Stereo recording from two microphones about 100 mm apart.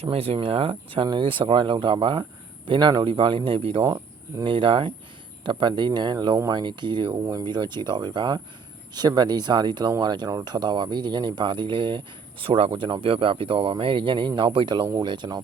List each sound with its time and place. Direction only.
0.0 s speech: 70° right (ahead or behind); by 15.4 s 50° right (ahead or behind)